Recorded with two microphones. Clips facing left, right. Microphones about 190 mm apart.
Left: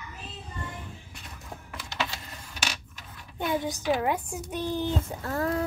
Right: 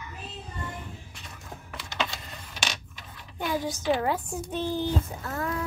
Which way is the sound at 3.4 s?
20° left (ahead or behind).